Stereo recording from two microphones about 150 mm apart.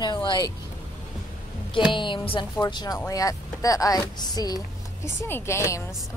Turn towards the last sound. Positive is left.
turn(degrees=20)  # may be behind; listen again after turning